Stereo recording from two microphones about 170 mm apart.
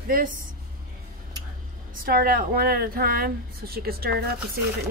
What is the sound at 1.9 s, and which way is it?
A woman's voice, 60° right (ahead or behind).